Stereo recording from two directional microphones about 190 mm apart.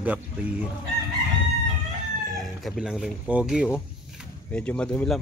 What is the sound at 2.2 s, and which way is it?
Speech, centre (ahead or behind).